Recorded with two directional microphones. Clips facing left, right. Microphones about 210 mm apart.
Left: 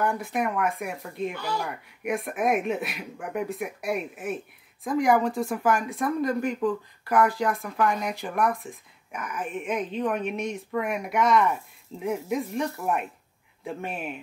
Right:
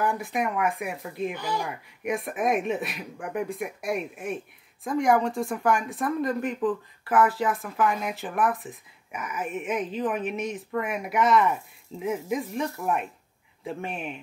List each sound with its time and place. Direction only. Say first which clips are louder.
0.0 s speech: even; centre (ahead or behind)
1.3 s speech: right 1 dB; 15° right (ahead or behind)
1.6 s speech: even; centre (ahead or behind)